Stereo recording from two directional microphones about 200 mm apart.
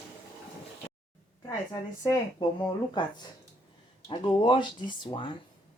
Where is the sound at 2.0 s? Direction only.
15° left (ahead or behind).